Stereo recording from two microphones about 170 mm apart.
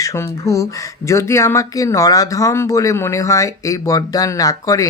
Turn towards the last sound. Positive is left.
turn(degrees=20)  # may be behind; listen again after turning